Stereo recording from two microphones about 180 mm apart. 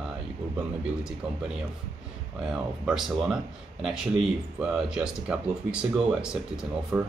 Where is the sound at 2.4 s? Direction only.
5° right (ahead or behind).